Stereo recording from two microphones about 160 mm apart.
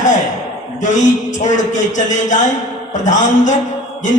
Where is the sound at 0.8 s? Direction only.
50° left (ahead or behind).